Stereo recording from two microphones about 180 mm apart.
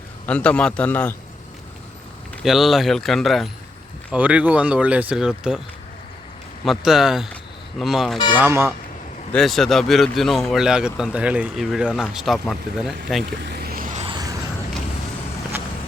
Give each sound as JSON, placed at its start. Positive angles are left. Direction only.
{"t": 0.3, "sound": "a man's voice", "side_deg": 5}
{"t": 2.4, "sound": "a man's voice", "side_deg": 0}
{"t": 6.7, "sound": "a man's voice", "side_deg": 0}
{"t": 8.4, "sound": "speech", "side_deg": -15}
{"t": 9.3, "sound": "a man's voice", "side_deg": 0}
{"t": 13.4, "sound": "vehicle", "side_deg": -65}
{"t": 14.0, "sound": "a sound", "side_deg": -25}